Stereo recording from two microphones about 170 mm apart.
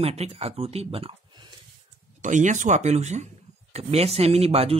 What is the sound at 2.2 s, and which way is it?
Speech, 45° right (ahead or behind).